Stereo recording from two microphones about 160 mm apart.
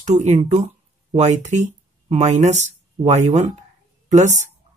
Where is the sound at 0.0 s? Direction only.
45° right (ahead or behind).